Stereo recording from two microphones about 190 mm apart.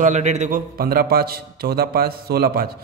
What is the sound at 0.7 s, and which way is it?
A man's voice, 50° right (ahead or behind).